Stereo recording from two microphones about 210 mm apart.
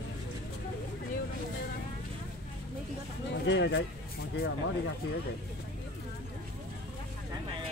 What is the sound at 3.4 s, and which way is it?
Speech, 55° left (ahead or behind).